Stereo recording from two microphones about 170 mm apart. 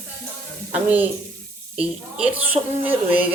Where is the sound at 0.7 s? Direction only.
10° right (ahead or behind).